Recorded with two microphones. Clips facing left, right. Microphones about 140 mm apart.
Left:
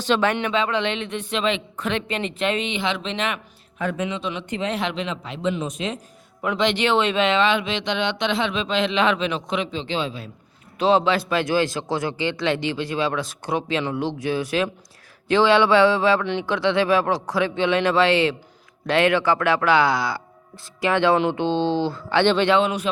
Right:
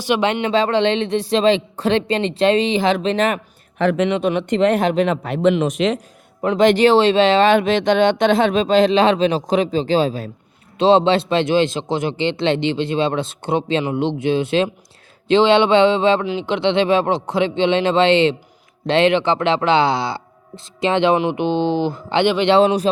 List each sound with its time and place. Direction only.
0.0 s speech: 10° right (ahead or behind)
0.3 s a man's voice: 20° right (ahead or behind)
0.5 s speech: 35° right (ahead or behind)
3.8 s a man's voice: 80° right
4.2 s a man's voice: 60° right (ahead or behind)
4.8 s a man's voice: 50° right (ahead or behind); by 6.0 s 90° right
6.6 s speech: 45° right (ahead or behind)
10.8 s a man's voice: 30° right (ahead or behind)
22.5 s speech: 40° right (ahead or behind)